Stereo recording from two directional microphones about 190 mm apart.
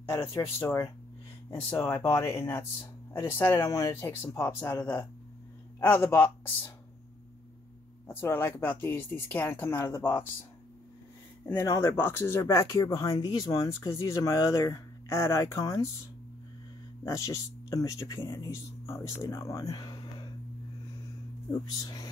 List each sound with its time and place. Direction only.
0.4 s speech: 15° left (ahead or behind)
8.1 s speech: 10° left (ahead or behind)
11.4 s speech: 15° left (ahead or behind)
17.0 s speech: 15° left (ahead or behind)
21.6 s speech: 20° left (ahead or behind)